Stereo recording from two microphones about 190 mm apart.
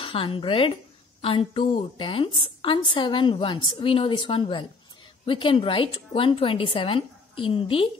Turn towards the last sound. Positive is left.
turn(degrees=30)  # may be behind; listen again after turning